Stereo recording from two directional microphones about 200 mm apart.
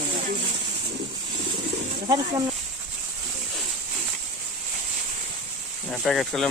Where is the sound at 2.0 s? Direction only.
20° right (ahead or behind).